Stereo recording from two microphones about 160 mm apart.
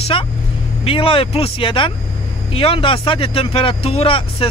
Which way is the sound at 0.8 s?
35° left (ahead or behind).